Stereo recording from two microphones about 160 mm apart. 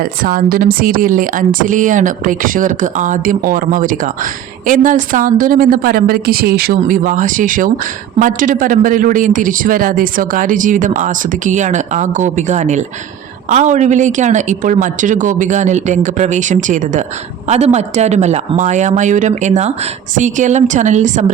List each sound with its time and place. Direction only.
0.0 s speech: 65° right (ahead or behind)